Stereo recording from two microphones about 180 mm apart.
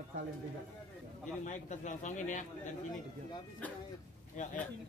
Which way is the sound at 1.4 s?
45° left (ahead or behind).